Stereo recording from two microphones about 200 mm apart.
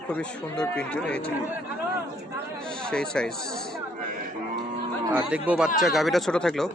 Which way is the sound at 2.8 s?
5° left (ahead or behind).